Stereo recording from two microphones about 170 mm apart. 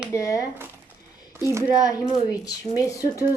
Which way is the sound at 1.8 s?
20° left (ahead or behind).